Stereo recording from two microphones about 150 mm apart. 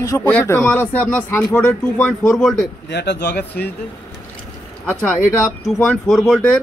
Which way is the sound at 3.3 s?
90° left.